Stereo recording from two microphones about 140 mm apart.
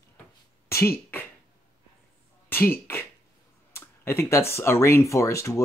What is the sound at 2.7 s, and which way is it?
Speech, 15° left (ahead or behind).